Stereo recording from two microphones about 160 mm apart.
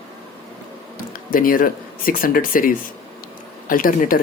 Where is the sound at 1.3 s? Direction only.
60° left (ahead or behind).